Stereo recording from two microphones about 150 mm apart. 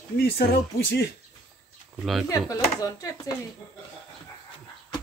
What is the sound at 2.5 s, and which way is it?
Speech, 20° left (ahead or behind).